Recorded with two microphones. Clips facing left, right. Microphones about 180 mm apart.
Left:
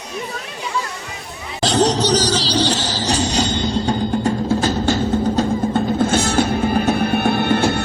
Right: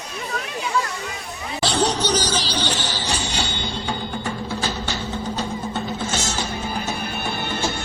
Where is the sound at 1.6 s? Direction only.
40° left (ahead or behind).